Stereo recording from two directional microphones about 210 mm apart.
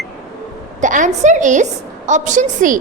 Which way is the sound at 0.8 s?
35° right (ahead or behind).